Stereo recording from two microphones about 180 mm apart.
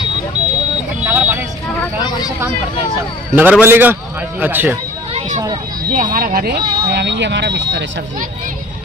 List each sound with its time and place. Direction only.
1.0 s vehicle: 10° right (ahead or behind)
3.3 s a man's voice: 10° right (ahead or behind)
5.9 s speech: 50° right (ahead or behind); by 7.8 s 70° right (ahead or behind)